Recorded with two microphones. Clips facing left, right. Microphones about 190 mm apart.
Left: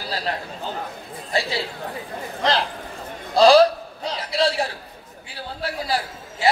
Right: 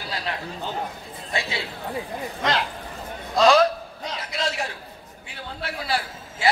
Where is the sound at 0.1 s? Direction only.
35° left (ahead or behind).